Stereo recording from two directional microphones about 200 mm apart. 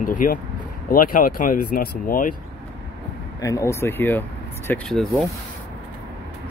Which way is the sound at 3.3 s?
15° left (ahead or behind).